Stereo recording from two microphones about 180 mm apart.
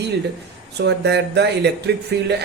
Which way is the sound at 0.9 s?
70° right (ahead or behind).